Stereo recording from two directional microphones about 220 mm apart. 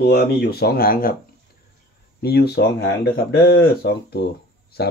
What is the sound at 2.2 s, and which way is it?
Speech, 45° left (ahead or behind).